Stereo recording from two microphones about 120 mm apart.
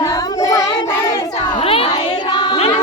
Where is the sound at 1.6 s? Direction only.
55° left (ahead or behind).